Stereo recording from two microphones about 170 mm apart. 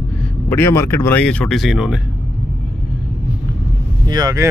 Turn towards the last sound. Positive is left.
turn(degrees=-20)  # may be behind; listen again after turning